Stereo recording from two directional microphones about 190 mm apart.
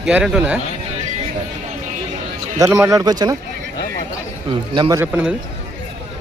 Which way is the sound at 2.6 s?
15° right (ahead or behind).